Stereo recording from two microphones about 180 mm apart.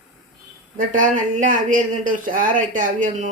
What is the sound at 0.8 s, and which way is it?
Speech, 45° right (ahead or behind).